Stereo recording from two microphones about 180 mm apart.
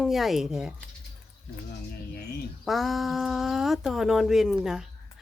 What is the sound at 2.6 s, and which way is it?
Speech, centre (ahead or behind).